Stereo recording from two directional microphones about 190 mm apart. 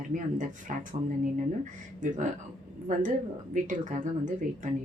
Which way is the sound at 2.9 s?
40° right (ahead or behind).